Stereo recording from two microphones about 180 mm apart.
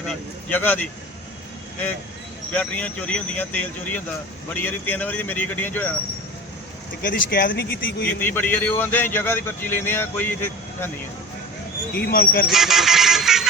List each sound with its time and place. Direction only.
0.1 s speech: 10° left (ahead or behind)
2.5 s speech: 10° left (ahead or behind)
7.0 s speech: 50° left (ahead or behind)
8.2 s speech: 10° left (ahead or behind)
11.9 s speech: 60° left (ahead or behind)
12.5 s a sound: centre (ahead or behind)